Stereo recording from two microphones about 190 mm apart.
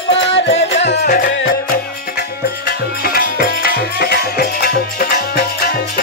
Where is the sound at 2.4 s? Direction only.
55° left (ahead or behind).